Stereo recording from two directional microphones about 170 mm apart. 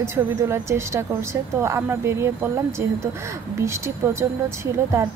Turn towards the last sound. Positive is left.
turn(degrees=-15)  # may be behind; listen again after turning